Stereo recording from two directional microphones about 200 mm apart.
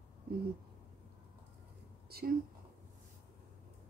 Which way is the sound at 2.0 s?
50° right (ahead or behind).